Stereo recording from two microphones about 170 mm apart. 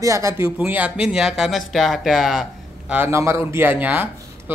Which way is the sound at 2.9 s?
10° right (ahead or behind).